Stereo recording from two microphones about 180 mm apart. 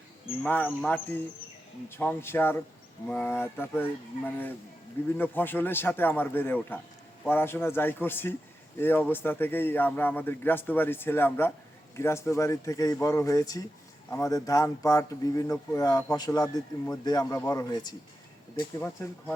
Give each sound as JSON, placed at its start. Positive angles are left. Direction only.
{"t": 0.4, "sound": "a man's voice", "side_deg": 10}
{"t": 19.0, "sound": "a man's voice", "side_deg": 15}